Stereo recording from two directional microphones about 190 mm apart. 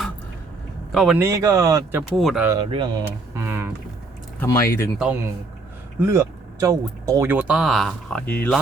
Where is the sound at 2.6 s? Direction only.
25° right (ahead or behind).